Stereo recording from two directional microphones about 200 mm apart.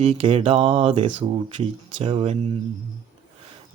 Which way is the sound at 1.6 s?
30° right (ahead or behind).